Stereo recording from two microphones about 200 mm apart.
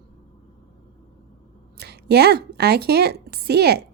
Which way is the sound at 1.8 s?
55° right (ahead or behind).